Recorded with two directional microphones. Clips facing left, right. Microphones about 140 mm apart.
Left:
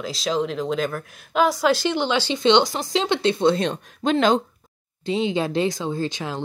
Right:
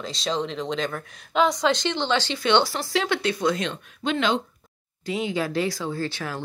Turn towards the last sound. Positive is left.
turn(degrees=20)  # may be behind; listen again after turning